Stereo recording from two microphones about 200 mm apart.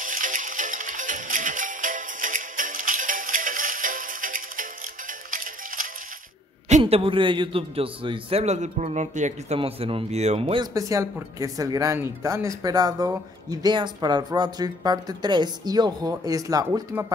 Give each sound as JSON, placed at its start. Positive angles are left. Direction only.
{"t": 0.0, "sound": "music", "side_deg": -40}
{"t": 6.7, "sound": "a man's voice", "side_deg": -30}